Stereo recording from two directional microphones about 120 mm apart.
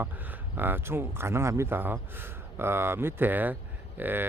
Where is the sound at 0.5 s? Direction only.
15° right (ahead or behind).